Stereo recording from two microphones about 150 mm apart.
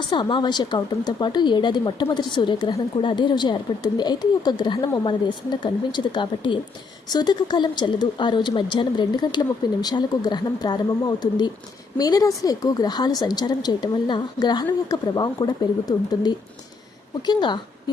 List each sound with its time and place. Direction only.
0.1 s a woman's voice: 30° left (ahead or behind)